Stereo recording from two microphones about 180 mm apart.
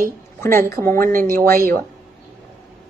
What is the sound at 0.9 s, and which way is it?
Speech, 50° right (ahead or behind).